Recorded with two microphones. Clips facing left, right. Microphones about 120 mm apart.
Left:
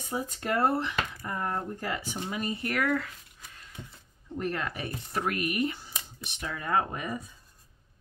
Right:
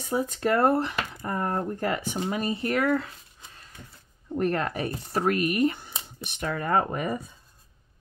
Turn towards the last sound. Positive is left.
turn(degrees=-60)  # may be behind; listen again after turning